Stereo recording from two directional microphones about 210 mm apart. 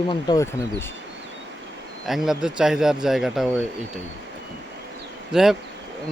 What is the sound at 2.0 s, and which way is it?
Speech, centre (ahead or behind).